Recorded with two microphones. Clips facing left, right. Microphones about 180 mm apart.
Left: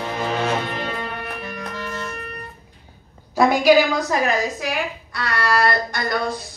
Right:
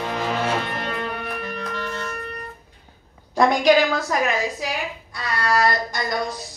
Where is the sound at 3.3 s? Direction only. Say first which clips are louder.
Left 1 dB; 5° left (ahead or behind).